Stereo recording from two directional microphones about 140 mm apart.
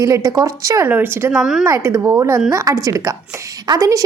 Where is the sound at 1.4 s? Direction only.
5° right (ahead or behind).